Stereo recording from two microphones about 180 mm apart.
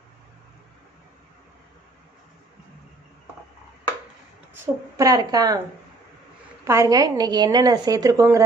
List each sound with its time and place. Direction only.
4.6 s a woman's voice: 20° right (ahead or behind)
6.7 s a woman's voice: 15° right (ahead or behind)